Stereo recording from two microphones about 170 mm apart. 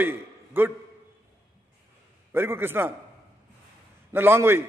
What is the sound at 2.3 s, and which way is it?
Speech, 15° right (ahead or behind).